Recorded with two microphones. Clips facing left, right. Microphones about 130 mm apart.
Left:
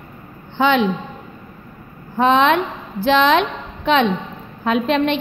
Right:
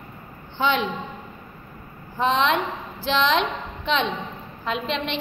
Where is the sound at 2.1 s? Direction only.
60° left (ahead or behind).